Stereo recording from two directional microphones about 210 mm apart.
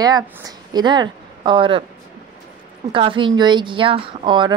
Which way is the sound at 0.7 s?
20° right (ahead or behind).